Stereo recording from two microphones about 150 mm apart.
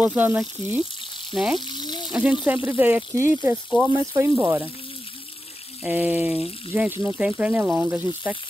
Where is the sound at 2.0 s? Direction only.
5° right (ahead or behind).